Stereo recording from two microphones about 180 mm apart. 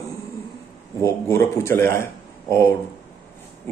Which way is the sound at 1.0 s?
15° left (ahead or behind).